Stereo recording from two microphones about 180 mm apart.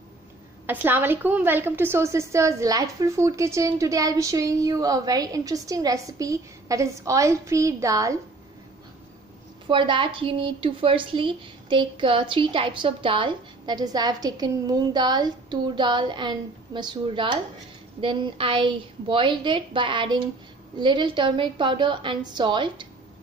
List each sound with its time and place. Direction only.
0.7 s a woman's voice: 10° right (ahead or behind)
9.7 s a woman's voice: 25° right (ahead or behind)